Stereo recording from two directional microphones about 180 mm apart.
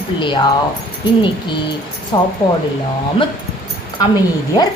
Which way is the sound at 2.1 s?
25° left (ahead or behind).